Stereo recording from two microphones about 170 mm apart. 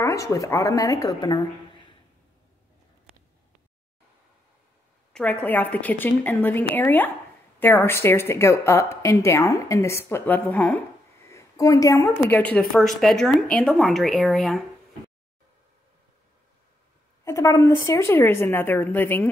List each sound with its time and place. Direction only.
0.0 s a woman's voice: 20° left (ahead or behind)
5.1 s a woman's voice: 5° left (ahead or behind)
11.2 s a sound: 20° left (ahead or behind)
12.3 s speech: 10° left (ahead or behind)
17.2 s a woman's voice: 20° left (ahead or behind)